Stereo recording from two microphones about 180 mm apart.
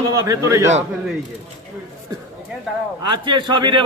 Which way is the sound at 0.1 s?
20° right (ahead or behind).